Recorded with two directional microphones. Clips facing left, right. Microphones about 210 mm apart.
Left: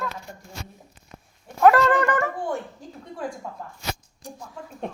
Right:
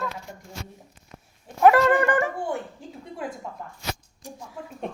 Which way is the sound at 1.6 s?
15° right (ahead or behind).